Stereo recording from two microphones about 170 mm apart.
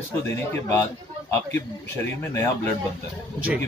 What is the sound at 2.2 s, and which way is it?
Speech, 15° left (ahead or behind).